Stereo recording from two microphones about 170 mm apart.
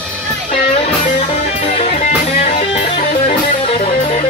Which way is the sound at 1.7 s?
45° left (ahead or behind).